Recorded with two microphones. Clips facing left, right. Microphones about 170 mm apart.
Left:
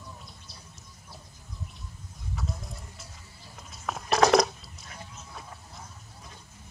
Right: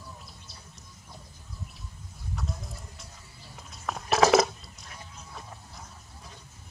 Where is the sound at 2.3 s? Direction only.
Centre (ahead or behind).